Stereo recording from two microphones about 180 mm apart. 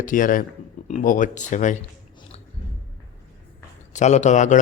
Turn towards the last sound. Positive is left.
turn(degrees=40)  # may be behind; listen again after turning